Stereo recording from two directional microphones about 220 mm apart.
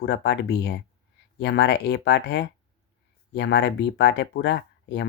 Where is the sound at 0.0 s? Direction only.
50° left (ahead or behind).